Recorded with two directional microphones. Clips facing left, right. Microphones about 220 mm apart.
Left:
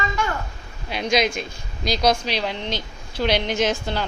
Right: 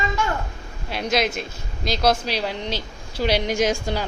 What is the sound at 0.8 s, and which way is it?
A woman's voice, 5° right (ahead or behind).